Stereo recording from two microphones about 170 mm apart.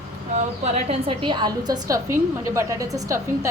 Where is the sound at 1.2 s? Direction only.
25° right (ahead or behind).